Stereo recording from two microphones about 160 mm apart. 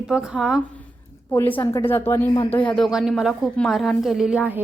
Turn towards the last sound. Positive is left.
turn(degrees=-10)  # may be behind; listen again after turning